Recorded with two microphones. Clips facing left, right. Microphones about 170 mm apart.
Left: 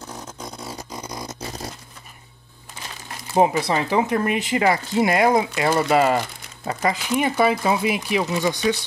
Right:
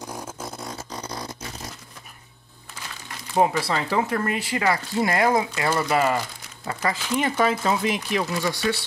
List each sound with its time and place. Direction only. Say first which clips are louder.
0.0 s vehicle: right 1 dB; 10° right (ahead or behind)
0.7 s a sound: left 1 dB; 15° left (ahead or behind)
1.4 s dog: left 5 dB; 35° left (ahead or behind)
3.3 s speech: left 3 dB; 20° left (ahead or behind)